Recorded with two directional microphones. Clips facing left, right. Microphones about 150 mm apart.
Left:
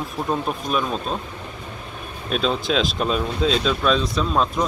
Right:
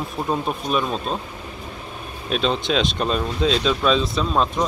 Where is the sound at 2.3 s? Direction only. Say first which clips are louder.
Even; centre (ahead or behind).